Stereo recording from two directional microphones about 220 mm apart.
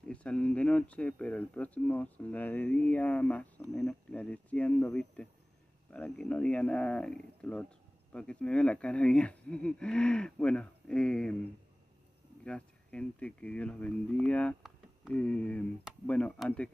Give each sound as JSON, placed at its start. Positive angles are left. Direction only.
{"t": 0.1, "sound": "speech", "side_deg": 5}
{"t": 12.4, "sound": "speech", "side_deg": 5}